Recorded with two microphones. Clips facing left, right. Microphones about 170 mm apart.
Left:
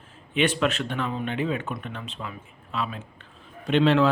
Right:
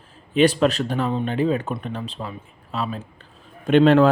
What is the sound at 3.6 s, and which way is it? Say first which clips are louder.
Speech: right 6 dB; 50° right (ahead or behind).